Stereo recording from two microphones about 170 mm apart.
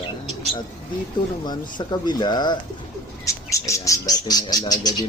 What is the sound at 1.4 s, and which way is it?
Speech, 25° left (ahead or behind).